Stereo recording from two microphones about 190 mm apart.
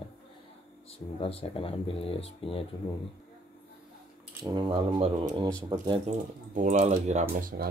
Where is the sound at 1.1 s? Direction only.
30° left (ahead or behind).